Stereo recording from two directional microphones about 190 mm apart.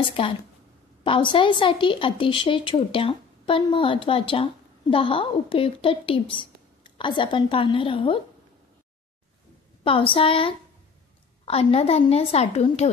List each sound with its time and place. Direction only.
0.0 s a woman's voice: 30° left (ahead or behind)
9.8 s a woman's voice: 30° left (ahead or behind)